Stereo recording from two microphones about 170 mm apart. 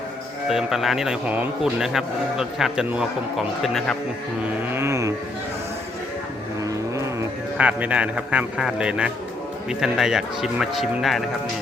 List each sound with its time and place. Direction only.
0.4 s speech: centre (ahead or behind)
4.7 s music: 15° right (ahead or behind)
6.7 s speech: 15° right (ahead or behind); by 11.2 s centre (ahead or behind)